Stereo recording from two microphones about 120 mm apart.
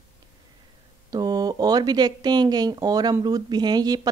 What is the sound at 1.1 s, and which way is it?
Speech, 30° right (ahead or behind).